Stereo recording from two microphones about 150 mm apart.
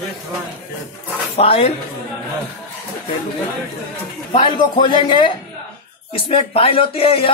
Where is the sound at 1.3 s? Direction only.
40° left (ahead or behind).